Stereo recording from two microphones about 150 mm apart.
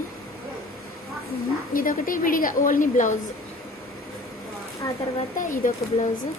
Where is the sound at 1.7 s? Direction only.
65° left (ahead or behind).